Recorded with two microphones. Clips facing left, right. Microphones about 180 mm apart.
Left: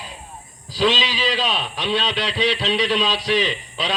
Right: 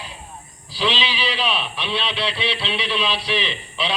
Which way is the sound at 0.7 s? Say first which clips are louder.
Left 4 dB; 45° left (ahead or behind).